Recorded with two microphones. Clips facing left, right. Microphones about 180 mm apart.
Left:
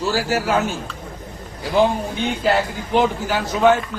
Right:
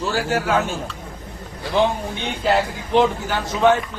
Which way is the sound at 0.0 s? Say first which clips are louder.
Left 1 dB; centre (ahead or behind).